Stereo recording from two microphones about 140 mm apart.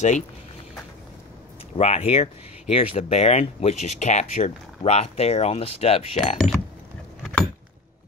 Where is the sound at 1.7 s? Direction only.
45° left (ahead or behind).